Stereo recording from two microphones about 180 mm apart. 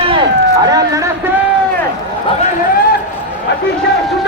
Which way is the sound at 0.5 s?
20° right (ahead or behind).